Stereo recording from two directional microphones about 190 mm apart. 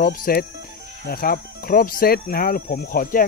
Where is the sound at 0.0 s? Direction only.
50° left (ahead or behind).